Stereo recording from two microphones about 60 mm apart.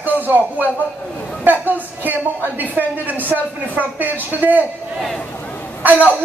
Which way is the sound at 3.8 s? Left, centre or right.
Right.